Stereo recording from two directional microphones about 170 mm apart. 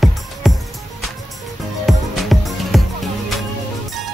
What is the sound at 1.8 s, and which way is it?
Music, centre (ahead or behind).